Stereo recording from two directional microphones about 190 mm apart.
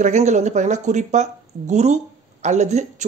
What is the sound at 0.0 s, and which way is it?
Speech, 40° right (ahead or behind).